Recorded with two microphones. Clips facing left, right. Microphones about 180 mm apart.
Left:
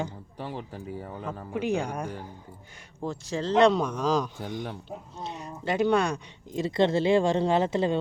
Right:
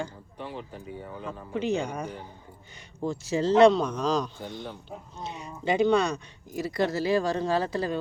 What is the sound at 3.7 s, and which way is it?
Speech, 10° left (ahead or behind).